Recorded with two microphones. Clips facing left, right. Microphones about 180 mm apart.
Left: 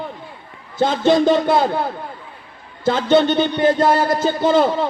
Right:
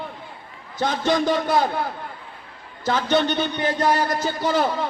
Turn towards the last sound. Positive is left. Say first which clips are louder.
# left 6 dB
turn(degrees=25)  # may be behind; listen again after turning